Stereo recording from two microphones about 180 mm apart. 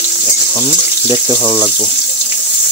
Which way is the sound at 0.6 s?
25° left (ahead or behind).